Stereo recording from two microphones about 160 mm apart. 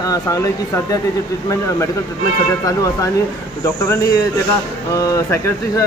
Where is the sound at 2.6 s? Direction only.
20° left (ahead or behind).